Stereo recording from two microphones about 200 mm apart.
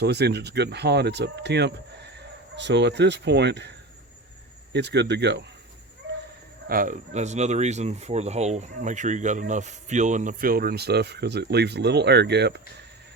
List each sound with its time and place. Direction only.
0.0 s speech: 55° right (ahead or behind)
6.7 s speech: 45° right (ahead or behind)